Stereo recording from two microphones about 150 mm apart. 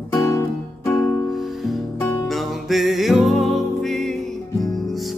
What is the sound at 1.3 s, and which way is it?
Music, centre (ahead or behind).